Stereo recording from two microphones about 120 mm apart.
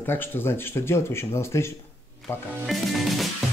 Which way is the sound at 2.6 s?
Centre (ahead or behind).